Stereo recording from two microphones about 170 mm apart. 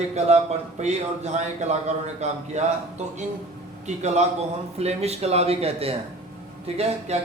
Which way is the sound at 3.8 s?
40° right (ahead or behind).